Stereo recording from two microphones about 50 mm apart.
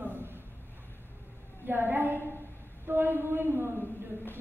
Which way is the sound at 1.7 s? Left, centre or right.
Right.